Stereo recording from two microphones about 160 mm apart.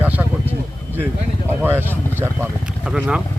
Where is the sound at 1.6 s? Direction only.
15° right (ahead or behind).